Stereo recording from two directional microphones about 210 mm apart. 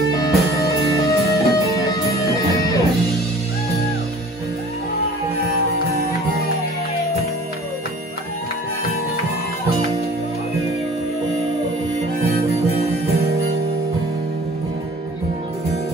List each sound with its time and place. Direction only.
0.2 s music: 15° left (ahead or behind)